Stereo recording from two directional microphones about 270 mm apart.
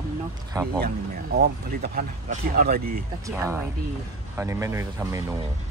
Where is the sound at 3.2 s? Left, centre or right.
Centre.